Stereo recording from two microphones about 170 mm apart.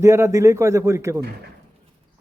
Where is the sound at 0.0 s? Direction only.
15° right (ahead or behind).